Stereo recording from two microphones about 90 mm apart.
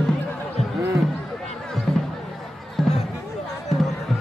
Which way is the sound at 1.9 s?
Centre (ahead or behind).